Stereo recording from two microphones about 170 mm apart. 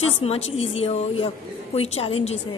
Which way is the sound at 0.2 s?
35° left (ahead or behind).